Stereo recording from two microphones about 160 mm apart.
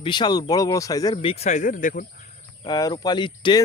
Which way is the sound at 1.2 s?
40° left (ahead or behind).